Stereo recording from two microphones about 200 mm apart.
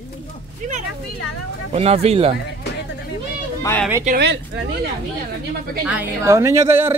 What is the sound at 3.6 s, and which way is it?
Speech, 10° left (ahead or behind).